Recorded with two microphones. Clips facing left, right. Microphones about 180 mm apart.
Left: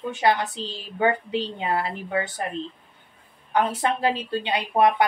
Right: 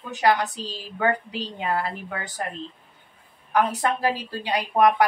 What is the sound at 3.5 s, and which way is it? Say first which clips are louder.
A woman's voice: even; 25° left (ahead or behind).